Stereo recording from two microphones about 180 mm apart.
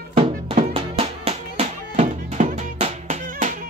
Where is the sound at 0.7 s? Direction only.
35° right (ahead or behind).